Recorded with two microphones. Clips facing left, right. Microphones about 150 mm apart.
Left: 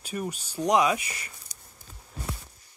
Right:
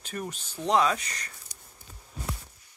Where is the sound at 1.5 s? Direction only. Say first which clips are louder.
Even; 45° left (ahead or behind).